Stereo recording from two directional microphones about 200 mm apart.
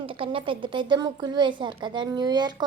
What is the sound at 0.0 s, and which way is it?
A woman's voice, 25° right (ahead or behind).